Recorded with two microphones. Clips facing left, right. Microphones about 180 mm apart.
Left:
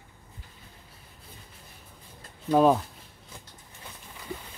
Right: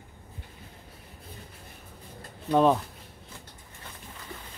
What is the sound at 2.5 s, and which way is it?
Speech, 5° left (ahead or behind).